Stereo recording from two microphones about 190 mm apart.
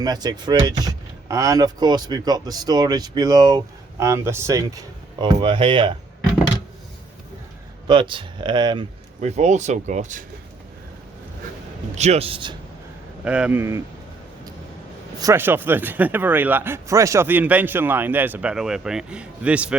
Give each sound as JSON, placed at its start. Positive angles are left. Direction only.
{"t": 0.0, "sound": "speech", "side_deg": -20}
{"t": 7.9, "sound": "speech", "side_deg": -25}
{"t": 11.9, "sound": "speech", "side_deg": -35}
{"t": 13.2, "sound": "speech", "side_deg": -5}
{"t": 15.2, "sound": "speech", "side_deg": -15}